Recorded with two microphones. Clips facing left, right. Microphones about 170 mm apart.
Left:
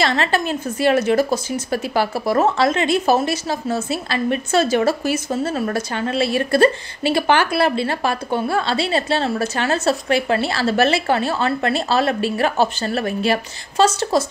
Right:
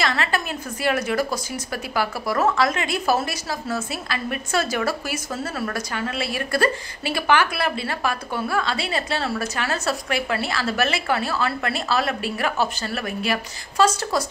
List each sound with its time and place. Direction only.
0.0 s speech: 30° left (ahead or behind)